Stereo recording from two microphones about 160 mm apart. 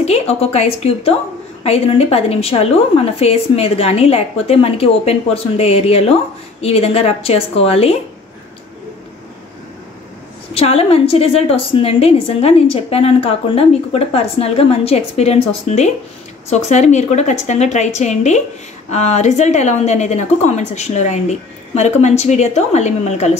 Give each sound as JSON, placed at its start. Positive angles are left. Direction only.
{"t": 0.0, "sound": "a woman's voice", "side_deg": 40}
{"t": 10.5, "sound": "a woman's voice", "side_deg": 40}